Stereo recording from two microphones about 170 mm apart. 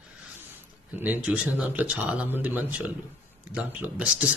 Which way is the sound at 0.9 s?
10° right (ahead or behind).